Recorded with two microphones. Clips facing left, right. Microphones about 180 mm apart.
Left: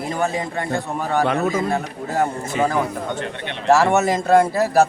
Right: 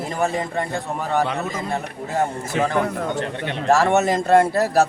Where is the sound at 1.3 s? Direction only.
55° left (ahead or behind).